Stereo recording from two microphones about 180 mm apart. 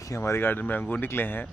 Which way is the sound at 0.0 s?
15° left (ahead or behind).